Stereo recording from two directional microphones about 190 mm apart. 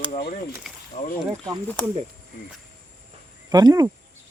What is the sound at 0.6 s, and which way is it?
Speech, centre (ahead or behind).